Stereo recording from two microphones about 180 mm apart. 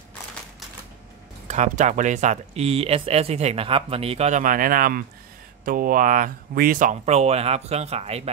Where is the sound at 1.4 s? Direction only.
40° right (ahead or behind).